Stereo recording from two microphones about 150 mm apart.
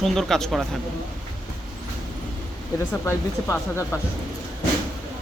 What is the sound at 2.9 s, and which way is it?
Speech, 15° left (ahead or behind).